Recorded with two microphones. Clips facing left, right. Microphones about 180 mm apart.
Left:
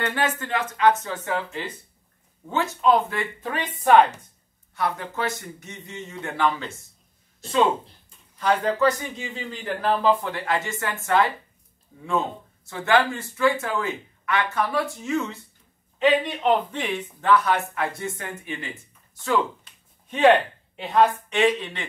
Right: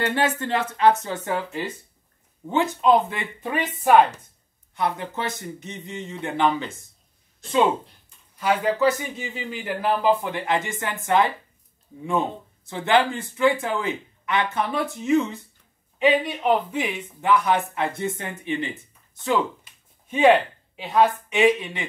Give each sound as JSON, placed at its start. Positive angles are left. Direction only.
{"t": 0.0, "sound": "speech", "side_deg": -25}
{"t": 2.4, "sound": "speech", "side_deg": -20}
{"t": 4.7, "sound": "speech", "side_deg": -20}
{"t": 8.4, "sound": "speech", "side_deg": -5}
{"t": 16.0, "sound": "speech", "side_deg": -5}
{"t": 19.2, "sound": "speech", "side_deg": -10}